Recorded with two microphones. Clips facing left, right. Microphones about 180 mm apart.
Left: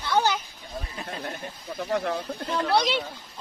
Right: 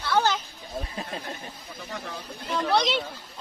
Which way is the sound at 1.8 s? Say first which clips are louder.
Left 10 dB; 50° left (ahead or behind).